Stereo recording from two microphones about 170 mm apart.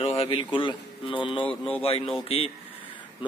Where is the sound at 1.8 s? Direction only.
35° left (ahead or behind).